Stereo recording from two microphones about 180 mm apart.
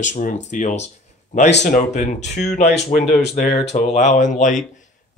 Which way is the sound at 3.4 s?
40° left (ahead or behind).